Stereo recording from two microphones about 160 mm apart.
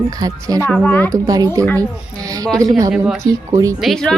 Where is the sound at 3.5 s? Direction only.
20° right (ahead or behind).